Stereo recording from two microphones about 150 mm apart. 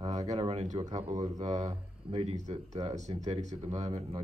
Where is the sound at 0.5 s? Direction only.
50° right (ahead or behind).